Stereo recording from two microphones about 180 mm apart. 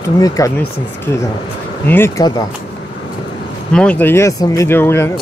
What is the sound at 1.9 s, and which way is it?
Speech, 15° left (ahead or behind).